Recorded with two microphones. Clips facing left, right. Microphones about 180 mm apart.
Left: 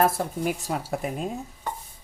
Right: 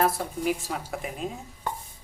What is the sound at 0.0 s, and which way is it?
Speech, 45° left (ahead or behind).